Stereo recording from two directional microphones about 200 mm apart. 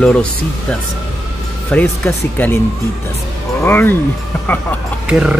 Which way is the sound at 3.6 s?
10° left (ahead or behind).